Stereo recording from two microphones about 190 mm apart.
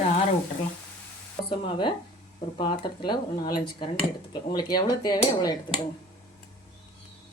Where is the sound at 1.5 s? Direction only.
25° left (ahead or behind).